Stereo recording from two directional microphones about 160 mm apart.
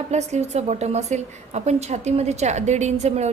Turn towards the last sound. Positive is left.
turn(degrees=-45)  # may be behind; listen again after turning